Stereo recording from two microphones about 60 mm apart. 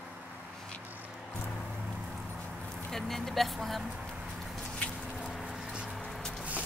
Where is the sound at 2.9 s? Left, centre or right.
Centre.